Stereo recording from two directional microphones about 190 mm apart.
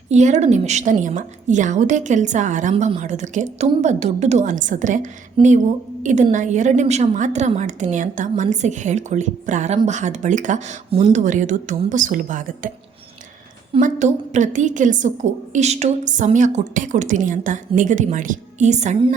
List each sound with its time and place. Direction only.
0.1 s a woman's voice: 40° right (ahead or behind)
5.4 s speech: 25° right (ahead or behind)
6.0 s a woman's voice: 40° right (ahead or behind)
13.7 s a woman's voice: 40° right (ahead or behind)